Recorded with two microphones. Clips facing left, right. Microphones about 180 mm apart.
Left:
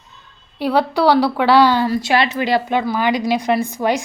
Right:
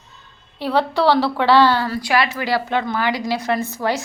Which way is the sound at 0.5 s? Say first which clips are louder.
Left 2 dB; 10° left (ahead or behind).